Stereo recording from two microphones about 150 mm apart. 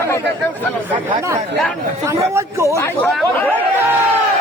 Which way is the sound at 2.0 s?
20° right (ahead or behind).